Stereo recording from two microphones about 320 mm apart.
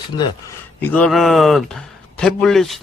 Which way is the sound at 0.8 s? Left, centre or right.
Centre.